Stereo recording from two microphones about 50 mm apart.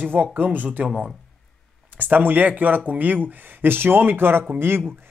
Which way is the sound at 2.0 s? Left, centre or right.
Right.